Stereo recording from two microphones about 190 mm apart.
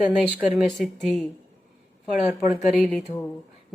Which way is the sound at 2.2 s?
Centre (ahead or behind).